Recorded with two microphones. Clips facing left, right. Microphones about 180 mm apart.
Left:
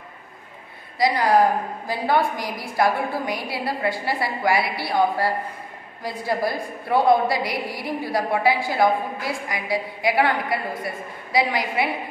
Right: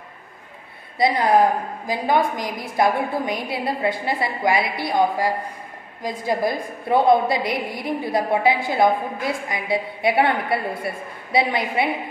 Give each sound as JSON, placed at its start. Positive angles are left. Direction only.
{"t": 0.9, "sound": "a woman's voice", "side_deg": -25}